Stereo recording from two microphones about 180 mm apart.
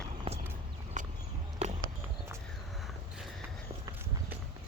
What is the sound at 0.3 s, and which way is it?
Walk, 30° right (ahead or behind).